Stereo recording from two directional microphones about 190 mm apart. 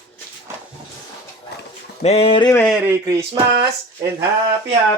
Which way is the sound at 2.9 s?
15° right (ahead or behind).